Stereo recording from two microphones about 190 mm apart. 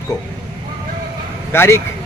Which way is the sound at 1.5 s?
15° left (ahead or behind).